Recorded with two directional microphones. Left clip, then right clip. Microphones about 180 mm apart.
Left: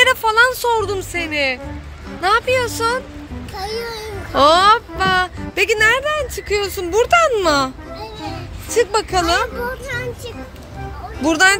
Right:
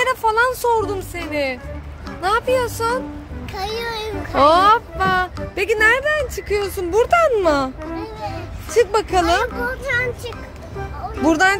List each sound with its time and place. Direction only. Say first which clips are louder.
0.0 s speech: left 4 dB; centre (ahead or behind)
3.5 s a child's voice: even; 20° right (ahead or behind)
4.3 s speech: left 1 dB; 5° right (ahead or behind)
9.8 s speech: right 4 dB; 25° right (ahead or behind)
11.2 s speech: left 2 dB; 15° right (ahead or behind)